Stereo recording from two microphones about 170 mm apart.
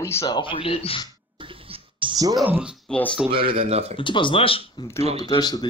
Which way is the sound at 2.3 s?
5° right (ahead or behind).